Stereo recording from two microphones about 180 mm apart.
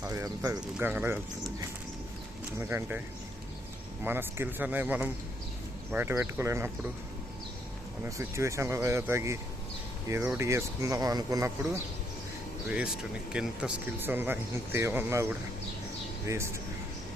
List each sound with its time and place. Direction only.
0.0 s speech: 15° right (ahead or behind)
2.6 s speech: 10° right (ahead or behind)
4.0 s speech: 10° right (ahead or behind)
8.0 s speech: 15° right (ahead or behind)
12.6 s speech: 5° right (ahead or behind)